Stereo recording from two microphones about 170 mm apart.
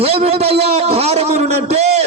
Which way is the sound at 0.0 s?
35° right (ahead or behind).